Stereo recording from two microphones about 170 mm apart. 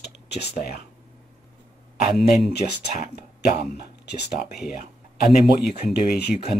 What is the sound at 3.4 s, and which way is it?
Speech, 75° left (ahead or behind).